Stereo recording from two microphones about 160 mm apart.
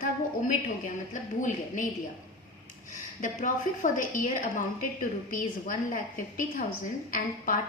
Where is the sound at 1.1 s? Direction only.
50° left (ahead or behind).